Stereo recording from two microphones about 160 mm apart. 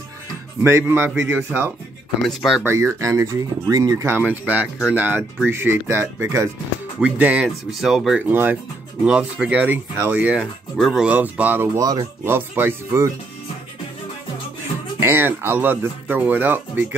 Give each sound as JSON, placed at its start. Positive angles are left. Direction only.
{"t": 0.6, "sound": "speech", "side_deg": -15}
{"t": 2.2, "sound": "speech", "side_deg": 0}
{"t": 2.6, "sound": "speech", "side_deg": -15}
{"t": 7.0, "sound": "speech", "side_deg": -5}
{"t": 15.0, "sound": "speech", "side_deg": -15}